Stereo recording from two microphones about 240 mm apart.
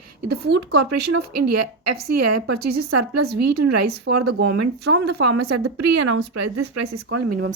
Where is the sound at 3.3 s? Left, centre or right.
Right.